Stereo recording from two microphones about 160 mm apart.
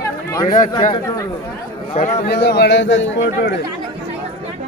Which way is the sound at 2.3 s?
90° left.